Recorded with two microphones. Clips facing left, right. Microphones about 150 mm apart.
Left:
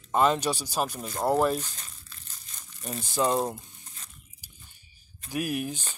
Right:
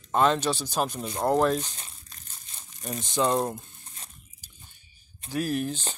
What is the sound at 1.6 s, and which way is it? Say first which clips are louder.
Crumpling: right 2 dB; 40° right (ahead or behind).